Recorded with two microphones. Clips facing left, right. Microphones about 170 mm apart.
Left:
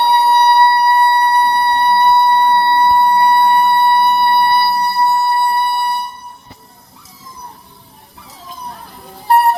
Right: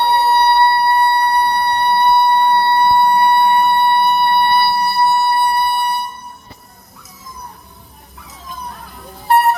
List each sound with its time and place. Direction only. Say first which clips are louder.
0.0 s vehicle: left 2 dB; 15° left (ahead or behind)
1.1 s siren: left 2 dB; 20° left (ahead or behind)
9.2 s a sound: left 1 dB; 35° left (ahead or behind)